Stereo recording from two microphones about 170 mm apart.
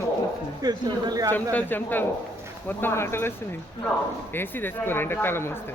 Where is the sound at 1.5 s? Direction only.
10° left (ahead or behind).